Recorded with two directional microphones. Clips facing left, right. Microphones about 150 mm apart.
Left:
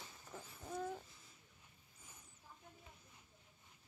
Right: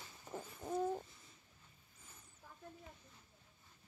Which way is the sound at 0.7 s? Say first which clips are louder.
Right 6 dB; 25° right (ahead or behind).